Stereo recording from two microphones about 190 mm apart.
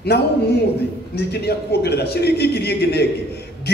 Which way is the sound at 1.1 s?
60° left (ahead or behind).